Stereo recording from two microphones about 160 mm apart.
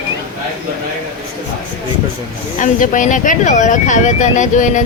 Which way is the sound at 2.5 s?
55° left (ahead or behind).